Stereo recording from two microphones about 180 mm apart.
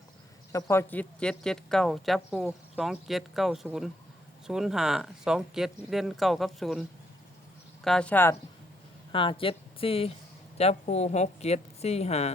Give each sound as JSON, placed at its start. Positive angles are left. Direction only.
{"t": 0.5, "sound": "speech", "side_deg": 15}
{"t": 7.9, "sound": "speech", "side_deg": 5}
{"t": 9.1, "sound": "a woman's voice", "side_deg": 30}